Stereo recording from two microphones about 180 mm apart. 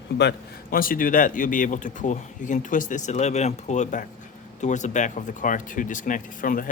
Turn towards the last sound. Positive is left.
turn(degrees=50)  # may be behind; listen again after turning